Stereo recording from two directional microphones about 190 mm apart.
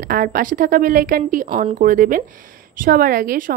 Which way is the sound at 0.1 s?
45° right (ahead or behind).